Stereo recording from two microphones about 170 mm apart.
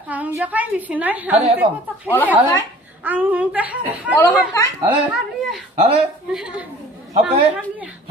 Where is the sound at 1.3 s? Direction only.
35° right (ahead or behind).